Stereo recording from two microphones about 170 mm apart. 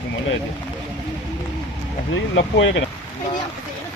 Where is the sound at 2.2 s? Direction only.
90° left.